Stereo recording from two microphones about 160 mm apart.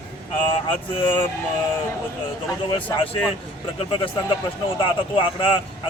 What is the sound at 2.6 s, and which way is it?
A man's voice, 35° left (ahead or behind).